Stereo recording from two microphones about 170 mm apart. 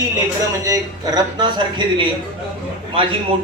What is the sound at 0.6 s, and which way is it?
A man's voice, 20° right (ahead or behind).